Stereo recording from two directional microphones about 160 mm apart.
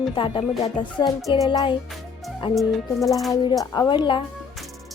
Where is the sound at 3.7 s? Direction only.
25° left (ahead or behind).